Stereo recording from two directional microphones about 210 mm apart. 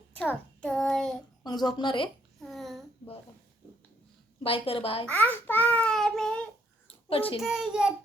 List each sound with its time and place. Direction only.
0.6 s child singing: 5° left (ahead or behind)
1.5 s speech: 20° left (ahead or behind)
2.4 s a sound: centre (ahead or behind)
4.4 s speech: 25° left (ahead or behind)
5.2 s babbling: 10° left (ahead or behind)
6.8 s a sound: 25° left (ahead or behind)
7.3 s child singing: centre (ahead or behind)